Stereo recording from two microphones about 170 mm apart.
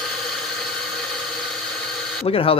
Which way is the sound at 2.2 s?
35° left (ahead or behind).